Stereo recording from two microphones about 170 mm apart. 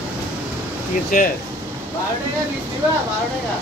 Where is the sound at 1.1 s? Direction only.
50° left (ahead or behind).